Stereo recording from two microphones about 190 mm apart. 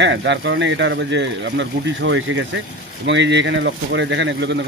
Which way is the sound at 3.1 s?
70° right (ahead or behind).